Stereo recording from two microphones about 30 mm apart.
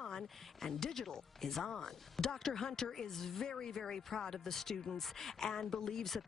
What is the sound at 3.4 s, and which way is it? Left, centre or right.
Speech, left.